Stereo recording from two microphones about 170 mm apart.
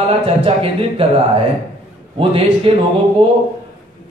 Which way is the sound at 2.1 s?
30° right (ahead or behind).